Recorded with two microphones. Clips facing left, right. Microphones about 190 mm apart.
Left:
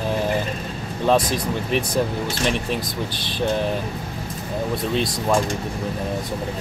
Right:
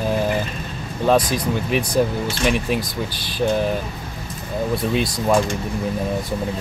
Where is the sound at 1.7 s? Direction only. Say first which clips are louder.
Right 2 dB; 5° right (ahead or behind).